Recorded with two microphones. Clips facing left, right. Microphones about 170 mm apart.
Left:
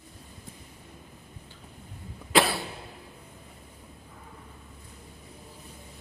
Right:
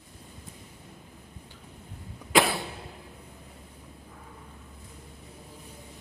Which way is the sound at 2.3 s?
15° right (ahead or behind).